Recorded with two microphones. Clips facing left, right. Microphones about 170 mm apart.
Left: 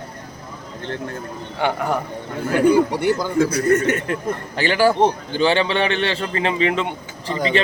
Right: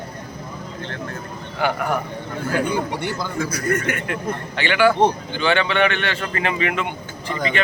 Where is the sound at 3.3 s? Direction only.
35° left (ahead or behind).